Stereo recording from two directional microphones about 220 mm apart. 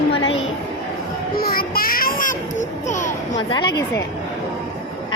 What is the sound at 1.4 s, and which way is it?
Child singing, 40° left (ahead or behind).